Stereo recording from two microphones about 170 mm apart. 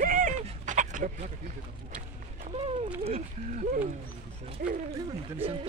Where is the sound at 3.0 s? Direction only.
35° right (ahead or behind).